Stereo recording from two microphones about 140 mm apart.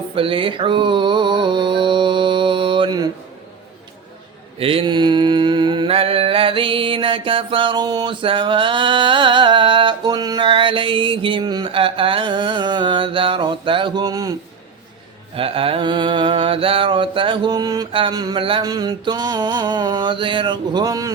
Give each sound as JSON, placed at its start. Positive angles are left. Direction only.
{"t": 0.2, "sound": "mantra", "side_deg": -40}
{"t": 4.5, "sound": "mantra", "side_deg": -40}
{"t": 15.4, "sound": "mantra", "side_deg": -40}